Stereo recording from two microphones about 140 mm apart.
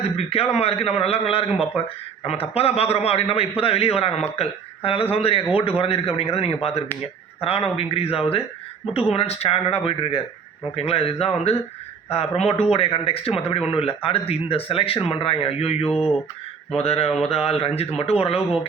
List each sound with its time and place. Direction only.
0.3 s a man's voice: 45° left (ahead or behind)
15.9 s a sound: 5° right (ahead or behind)
16.7 s a man's voice: 45° left (ahead or behind)